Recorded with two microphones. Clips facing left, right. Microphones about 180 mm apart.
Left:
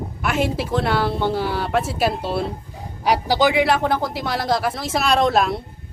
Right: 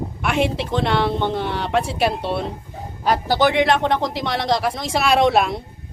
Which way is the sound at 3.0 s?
10° left (ahead or behind).